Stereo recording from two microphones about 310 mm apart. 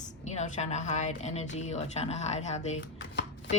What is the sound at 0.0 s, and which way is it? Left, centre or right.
A woman's voice, left.